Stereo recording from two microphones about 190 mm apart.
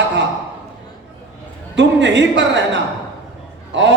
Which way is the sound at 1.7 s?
70° right (ahead or behind).